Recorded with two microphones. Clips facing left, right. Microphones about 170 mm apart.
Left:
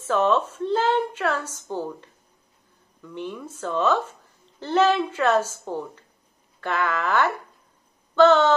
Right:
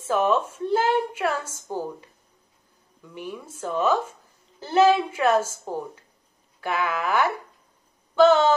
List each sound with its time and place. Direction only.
0.0 s a woman's voice: 10° right (ahead or behind)
6.6 s a woman's voice: 10° right (ahead or behind)